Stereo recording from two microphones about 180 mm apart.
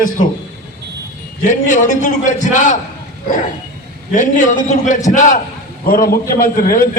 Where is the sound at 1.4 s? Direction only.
45° left (ahead or behind).